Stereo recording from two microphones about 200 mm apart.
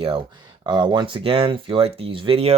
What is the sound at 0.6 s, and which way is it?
Speech, 20° right (ahead or behind).